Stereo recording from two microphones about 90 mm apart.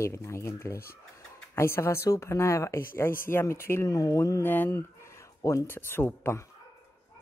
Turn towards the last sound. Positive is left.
turn(degrees=25)  # may be behind; listen again after turning